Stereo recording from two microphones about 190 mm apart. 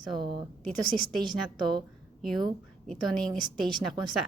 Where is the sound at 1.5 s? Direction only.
25° right (ahead or behind).